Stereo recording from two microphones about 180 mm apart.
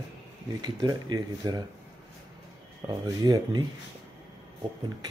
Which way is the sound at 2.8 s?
20° right (ahead or behind).